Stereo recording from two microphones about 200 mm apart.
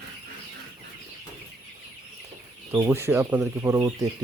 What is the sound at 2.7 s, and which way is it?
Speech, 10° right (ahead or behind).